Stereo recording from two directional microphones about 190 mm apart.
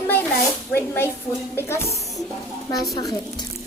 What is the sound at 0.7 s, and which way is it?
Speech, 15° left (ahead or behind).